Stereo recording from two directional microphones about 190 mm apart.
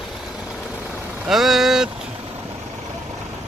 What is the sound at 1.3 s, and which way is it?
Vehicle, centre (ahead or behind).